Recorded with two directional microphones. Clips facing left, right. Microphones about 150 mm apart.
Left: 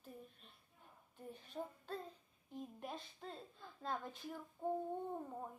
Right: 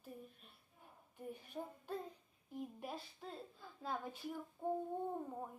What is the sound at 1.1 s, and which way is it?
Child singing, 10° right (ahead or behind).